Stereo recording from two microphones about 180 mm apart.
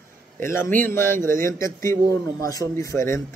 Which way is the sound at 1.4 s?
15° left (ahead or behind).